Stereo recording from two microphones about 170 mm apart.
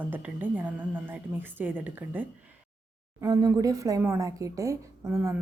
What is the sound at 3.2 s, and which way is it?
A woman's voice, 20° right (ahead or behind).